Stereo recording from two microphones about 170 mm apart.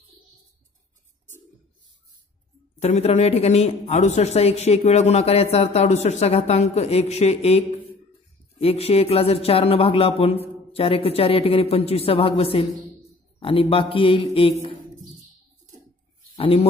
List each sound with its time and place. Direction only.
2.8 s a woman's voice: 40° left (ahead or behind)
16.3 s a man's voice: 35° left (ahead or behind)